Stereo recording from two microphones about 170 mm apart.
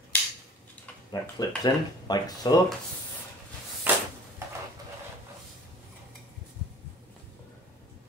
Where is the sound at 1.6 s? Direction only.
25° left (ahead or behind).